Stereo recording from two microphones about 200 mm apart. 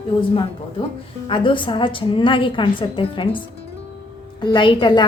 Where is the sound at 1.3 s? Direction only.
25° left (ahead or behind).